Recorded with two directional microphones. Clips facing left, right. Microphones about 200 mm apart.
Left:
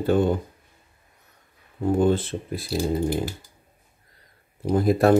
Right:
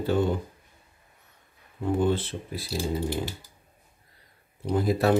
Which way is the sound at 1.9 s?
45° left (ahead or behind).